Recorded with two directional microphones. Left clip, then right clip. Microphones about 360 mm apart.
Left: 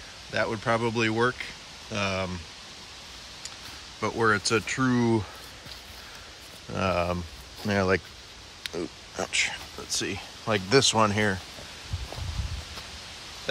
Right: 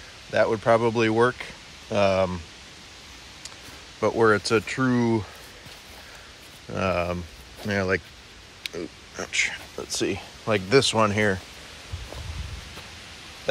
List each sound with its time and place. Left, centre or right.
0.3 s speech: centre
4.0 s speech: centre
6.7 s speech: centre
9.8 s speech: centre